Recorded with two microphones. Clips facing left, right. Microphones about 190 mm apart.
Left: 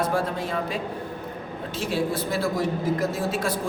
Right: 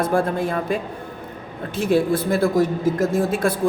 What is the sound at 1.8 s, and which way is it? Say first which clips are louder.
A man's voice: right 8 dB; 55° right (ahead or behind).